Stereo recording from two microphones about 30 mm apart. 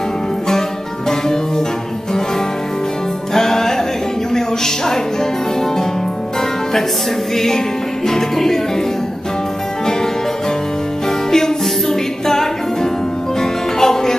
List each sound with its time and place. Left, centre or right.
0.5 s music: centre
3.3 s music: centre
7.3 s music: centre
11.1 s music: centre